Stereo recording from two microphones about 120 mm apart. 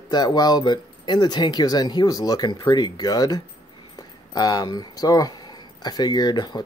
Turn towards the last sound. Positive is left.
turn(degrees=35)  # may be behind; listen again after turning